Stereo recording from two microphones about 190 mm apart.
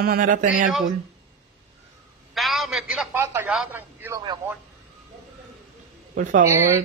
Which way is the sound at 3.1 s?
15° right (ahead or behind).